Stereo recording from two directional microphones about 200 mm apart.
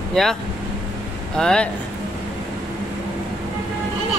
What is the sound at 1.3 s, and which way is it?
Speech, 5° left (ahead or behind).